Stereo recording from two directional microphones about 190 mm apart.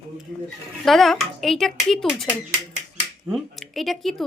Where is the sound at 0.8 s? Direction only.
Centre (ahead or behind).